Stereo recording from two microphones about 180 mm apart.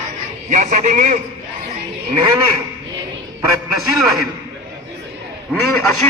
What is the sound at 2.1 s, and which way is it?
Speech, 20° right (ahead or behind).